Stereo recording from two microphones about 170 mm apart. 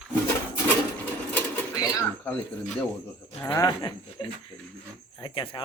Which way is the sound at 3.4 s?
15° left (ahead or behind).